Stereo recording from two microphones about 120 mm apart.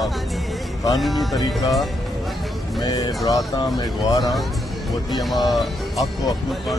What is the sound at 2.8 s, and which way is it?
Speech, 35° left (ahead or behind).